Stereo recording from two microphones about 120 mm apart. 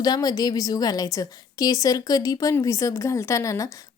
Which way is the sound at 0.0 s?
35° left (ahead or behind).